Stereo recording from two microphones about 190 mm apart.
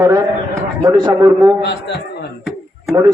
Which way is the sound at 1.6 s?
65° left (ahead or behind).